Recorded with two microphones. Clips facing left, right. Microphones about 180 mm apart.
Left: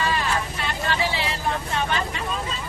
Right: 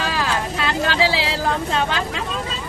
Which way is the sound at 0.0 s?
90° right.